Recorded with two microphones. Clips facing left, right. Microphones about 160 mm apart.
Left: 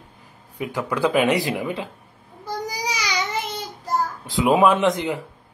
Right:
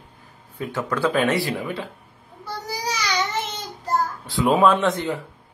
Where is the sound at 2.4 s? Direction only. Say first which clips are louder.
Left 1 dB; 15° left (ahead or behind).